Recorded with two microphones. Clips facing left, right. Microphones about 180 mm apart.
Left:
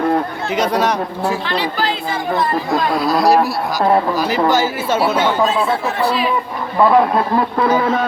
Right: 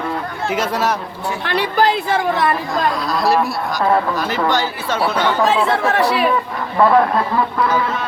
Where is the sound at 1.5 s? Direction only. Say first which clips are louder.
Right 3 dB; 55° right (ahead or behind).